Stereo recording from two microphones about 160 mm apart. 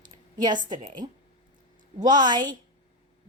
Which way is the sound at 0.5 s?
55° right (ahead or behind).